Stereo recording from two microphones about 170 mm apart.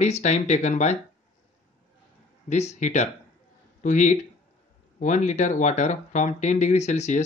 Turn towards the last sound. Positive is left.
turn(degrees=45)  # may be behind; listen again after turning